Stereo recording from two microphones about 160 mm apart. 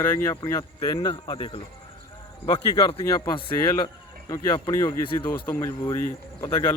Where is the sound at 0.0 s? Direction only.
15° left (ahead or behind); by 1.6 s 30° left (ahead or behind).